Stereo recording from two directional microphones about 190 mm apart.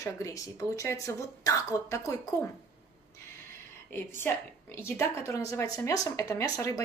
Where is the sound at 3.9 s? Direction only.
10° left (ahead or behind).